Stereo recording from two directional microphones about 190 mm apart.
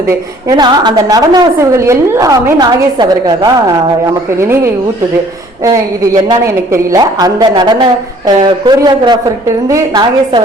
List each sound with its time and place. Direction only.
0.1 s a woman's voice: 20° right (ahead or behind)